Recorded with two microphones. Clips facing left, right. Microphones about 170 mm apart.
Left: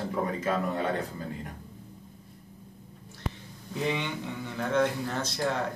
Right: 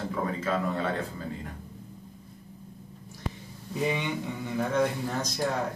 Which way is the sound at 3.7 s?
10° right (ahead or behind).